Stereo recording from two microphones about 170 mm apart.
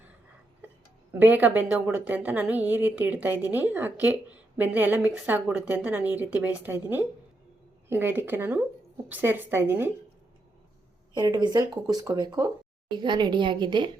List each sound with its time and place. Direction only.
1.2 s speech: 10° right (ahead or behind)
11.1 s speech: 25° right (ahead or behind)